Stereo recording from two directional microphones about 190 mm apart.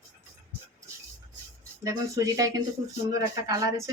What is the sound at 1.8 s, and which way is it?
Speech, 20° right (ahead or behind).